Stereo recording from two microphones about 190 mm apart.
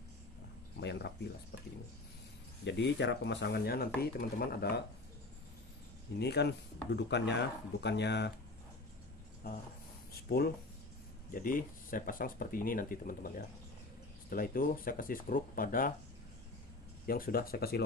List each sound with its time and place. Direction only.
0.7 s a sound: 60° left (ahead or behind)
2.6 s speech: 65° left (ahead or behind)
6.1 s speech: 60° left (ahead or behind)
10.1 s speech: 55° left (ahead or behind)
14.3 s speech: 50° left (ahead or behind)
17.0 s speech: 50° left (ahead or behind)